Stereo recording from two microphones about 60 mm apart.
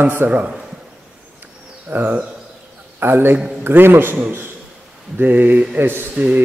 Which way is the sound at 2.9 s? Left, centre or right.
Right.